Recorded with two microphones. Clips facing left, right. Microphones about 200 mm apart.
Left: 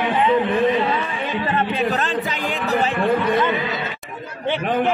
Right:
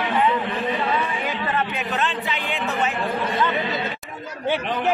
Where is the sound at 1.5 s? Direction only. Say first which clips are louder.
Left 5 dB; 30° left (ahead or behind).